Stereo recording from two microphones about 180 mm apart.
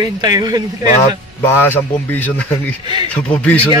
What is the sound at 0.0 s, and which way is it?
Speech, 20° right (ahead or behind).